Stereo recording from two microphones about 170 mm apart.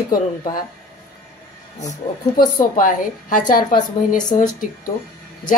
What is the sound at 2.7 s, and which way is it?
A woman's voice, 50° left (ahead or behind).